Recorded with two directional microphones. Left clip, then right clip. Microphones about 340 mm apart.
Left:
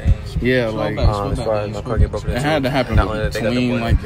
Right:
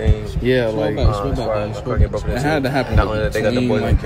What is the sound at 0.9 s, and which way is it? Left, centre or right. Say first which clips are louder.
Speech: even; centre.